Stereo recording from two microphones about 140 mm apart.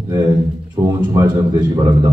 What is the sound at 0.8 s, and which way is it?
Speech, 35° right (ahead or behind).